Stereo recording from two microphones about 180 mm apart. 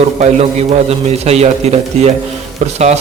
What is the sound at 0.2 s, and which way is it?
A man's voice, 40° right (ahead or behind).